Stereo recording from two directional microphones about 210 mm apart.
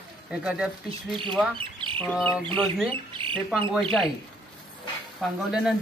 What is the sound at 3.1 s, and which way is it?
Speech, 25° right (ahead or behind).